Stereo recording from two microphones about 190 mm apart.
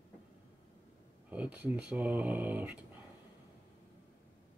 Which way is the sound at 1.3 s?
5° right (ahead or behind).